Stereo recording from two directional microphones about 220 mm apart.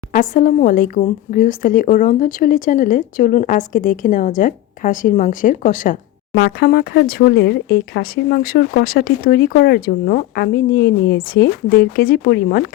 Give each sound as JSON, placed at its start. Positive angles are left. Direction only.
{"t": 0.1, "sound": "speech", "side_deg": 40}